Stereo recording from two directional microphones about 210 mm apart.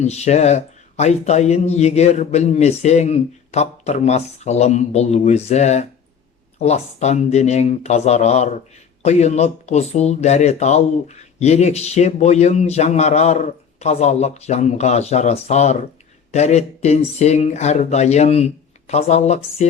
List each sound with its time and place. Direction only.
0.0 s speech: 30° left (ahead or behind)